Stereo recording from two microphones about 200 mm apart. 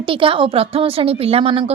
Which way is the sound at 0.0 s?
25° right (ahead or behind).